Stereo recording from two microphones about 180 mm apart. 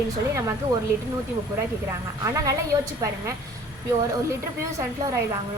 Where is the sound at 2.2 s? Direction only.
20° right (ahead or behind).